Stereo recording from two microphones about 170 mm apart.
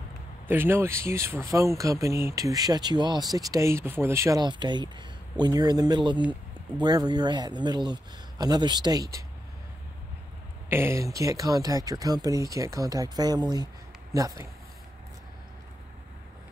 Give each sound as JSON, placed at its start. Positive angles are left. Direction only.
{"t": 0.5, "sound": "speech", "side_deg": -15}
{"t": 10.7, "sound": "speech", "side_deg": -15}